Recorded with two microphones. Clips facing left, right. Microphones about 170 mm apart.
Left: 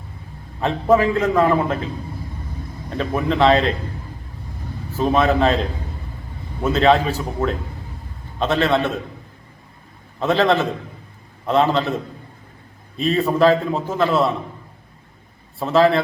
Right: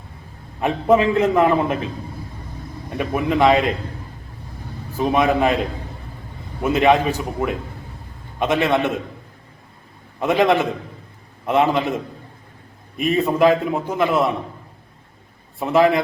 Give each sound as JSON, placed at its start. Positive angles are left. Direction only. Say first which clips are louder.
{"t": 0.6, "sound": "a man's voice", "louder": "even", "side_deg": -20}
{"t": 3.0, "sound": "a man's voice", "louder": "even", "side_deg": -10}
{"t": 4.9, "sound": "a man's voice", "louder": "even", "side_deg": -15}
{"t": 6.6, "sound": "a man's voice", "louder": "even", "side_deg": -15}
{"t": 10.2, "sound": "a man's voice", "louder": "even", "side_deg": -15}
{"t": 13.0, "sound": "a man's voice", "louder": "even", "side_deg": -15}
{"t": 15.5, "sound": "a man's voice", "louder": "even", "side_deg": -15}